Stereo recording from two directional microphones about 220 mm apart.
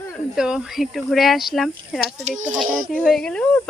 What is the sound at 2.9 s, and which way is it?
Speech, 5° left (ahead or behind).